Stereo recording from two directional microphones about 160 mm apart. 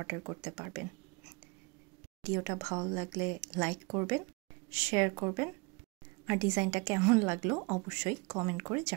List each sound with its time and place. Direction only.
0.0 s speech: 15° right (ahead or behind)
2.2 s speech: 15° right (ahead or behind)